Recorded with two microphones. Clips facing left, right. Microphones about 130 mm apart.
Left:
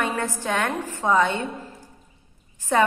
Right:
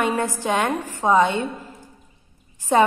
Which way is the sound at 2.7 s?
20° right (ahead or behind).